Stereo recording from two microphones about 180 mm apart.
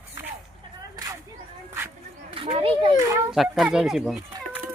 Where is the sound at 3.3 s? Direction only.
Centre (ahead or behind).